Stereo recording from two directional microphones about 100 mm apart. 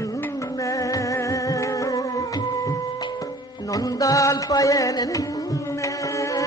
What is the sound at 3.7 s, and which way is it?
Music, 35° left (ahead or behind).